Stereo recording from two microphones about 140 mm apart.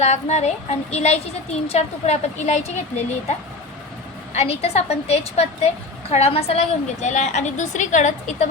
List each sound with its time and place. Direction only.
0.0 s a woman's voice: 55° left (ahead or behind)
4.4 s a woman's voice: 45° left (ahead or behind)